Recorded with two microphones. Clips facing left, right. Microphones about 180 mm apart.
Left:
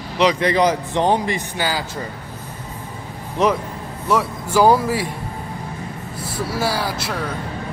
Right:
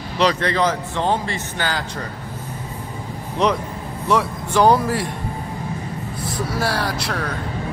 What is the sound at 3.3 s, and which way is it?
Speech, centre (ahead or behind).